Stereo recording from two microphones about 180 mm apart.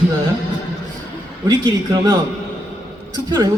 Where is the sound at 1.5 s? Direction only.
25° right (ahead or behind).